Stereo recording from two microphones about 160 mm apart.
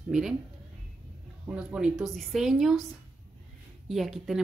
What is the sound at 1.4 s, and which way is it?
A woman's voice, 5° right (ahead or behind).